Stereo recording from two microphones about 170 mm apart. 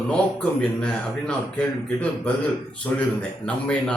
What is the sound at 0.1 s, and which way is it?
Speech, 5° left (ahead or behind).